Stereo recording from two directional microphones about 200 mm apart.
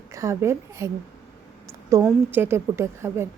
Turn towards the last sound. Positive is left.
turn(degrees=-15)  # may be behind; listen again after turning